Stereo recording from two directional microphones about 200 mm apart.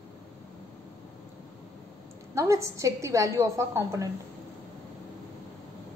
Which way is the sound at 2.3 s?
15° right (ahead or behind).